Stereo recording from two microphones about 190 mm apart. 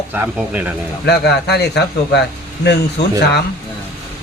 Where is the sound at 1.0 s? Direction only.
60° left (ahead or behind).